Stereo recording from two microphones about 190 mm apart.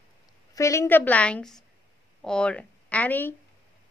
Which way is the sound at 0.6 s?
15° left (ahead or behind).